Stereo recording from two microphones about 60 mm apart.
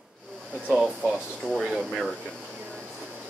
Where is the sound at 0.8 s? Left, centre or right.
Right.